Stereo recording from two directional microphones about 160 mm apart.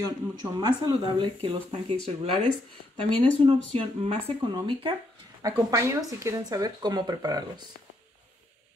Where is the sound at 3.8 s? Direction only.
40° right (ahead or behind).